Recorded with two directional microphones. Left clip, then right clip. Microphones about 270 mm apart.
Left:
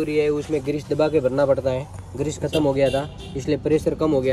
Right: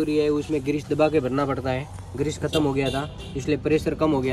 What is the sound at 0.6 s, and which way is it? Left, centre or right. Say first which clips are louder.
Speech: left 1 dB; right.